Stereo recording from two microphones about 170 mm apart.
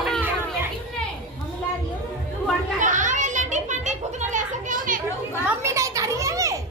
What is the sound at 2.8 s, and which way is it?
Children playing, 45° right (ahead or behind).